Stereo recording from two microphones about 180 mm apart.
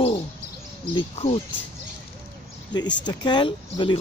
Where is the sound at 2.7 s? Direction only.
25° left (ahead or behind).